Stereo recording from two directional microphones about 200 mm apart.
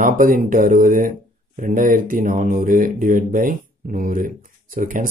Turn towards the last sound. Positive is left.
turn(degrees=-45)  # may be behind; listen again after turning